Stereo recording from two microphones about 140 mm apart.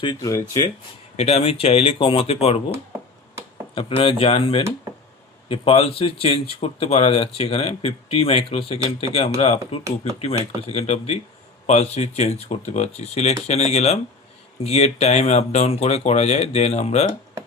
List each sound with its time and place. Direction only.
0.0 s speech: 30° left (ahead or behind)
1.1 s speech: 50° left (ahead or behind)
3.8 s speech: 40° left (ahead or behind)